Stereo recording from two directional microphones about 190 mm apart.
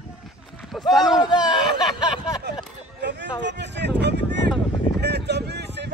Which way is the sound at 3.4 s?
65° right (ahead or behind).